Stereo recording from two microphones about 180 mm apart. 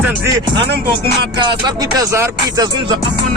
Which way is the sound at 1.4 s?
20° right (ahead or behind).